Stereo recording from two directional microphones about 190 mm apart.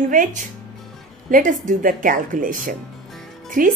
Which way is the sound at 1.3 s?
45° right (ahead or behind).